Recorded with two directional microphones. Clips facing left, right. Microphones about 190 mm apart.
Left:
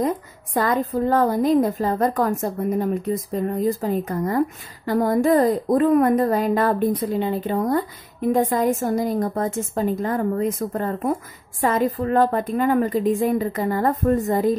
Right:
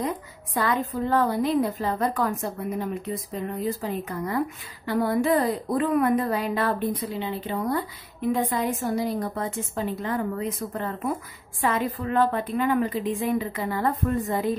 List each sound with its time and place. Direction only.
0.6 s a woman's voice: 45° left (ahead or behind)